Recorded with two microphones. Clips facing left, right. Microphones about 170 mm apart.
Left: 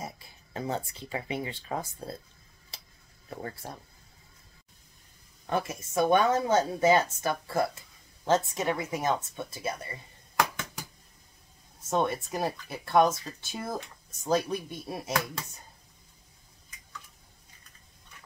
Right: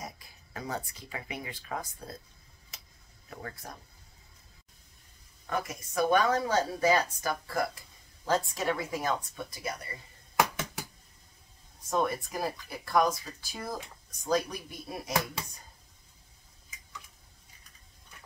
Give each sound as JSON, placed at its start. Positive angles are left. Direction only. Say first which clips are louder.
{"t": 0.0, "sound": "speech", "louder": "left 3 dB", "side_deg": 25}
{"t": 2.7, "sound": "a sound", "louder": "left 3 dB", "side_deg": 30}
{"t": 3.4, "sound": "a woman's voice", "louder": "left 3 dB", "side_deg": 30}
{"t": 5.5, "sound": "a woman's voice", "louder": "left 4 dB", "side_deg": 25}
{"t": 10.5, "sound": "a sound", "louder": "right 2 dB", "side_deg": -5}
{"t": 11.8, "sound": "a woman's voice", "louder": "left 2 dB", "side_deg": 25}